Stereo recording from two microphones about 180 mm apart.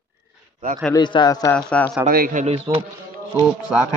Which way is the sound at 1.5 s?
5° left (ahead or behind).